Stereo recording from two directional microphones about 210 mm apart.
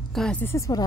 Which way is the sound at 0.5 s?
15° left (ahead or behind).